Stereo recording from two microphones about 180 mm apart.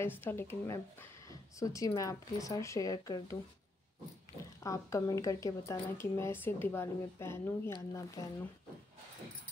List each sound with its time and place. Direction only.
0.0 s a woman's voice: 10° left (ahead or behind)
4.6 s a woman's voice: 20° left (ahead or behind)